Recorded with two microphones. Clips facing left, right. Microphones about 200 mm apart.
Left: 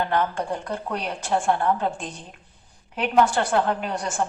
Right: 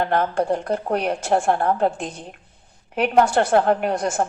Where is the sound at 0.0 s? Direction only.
50° right (ahead or behind).